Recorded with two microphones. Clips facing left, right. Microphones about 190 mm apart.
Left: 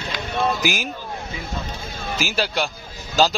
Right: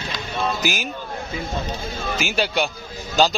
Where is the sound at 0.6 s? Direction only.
10° left (ahead or behind).